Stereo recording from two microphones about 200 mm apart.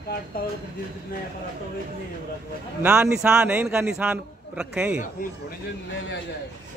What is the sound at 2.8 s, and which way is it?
A man's voice, 5° right (ahead or behind).